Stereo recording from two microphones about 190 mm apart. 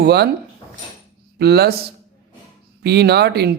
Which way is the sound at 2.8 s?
60° right (ahead or behind).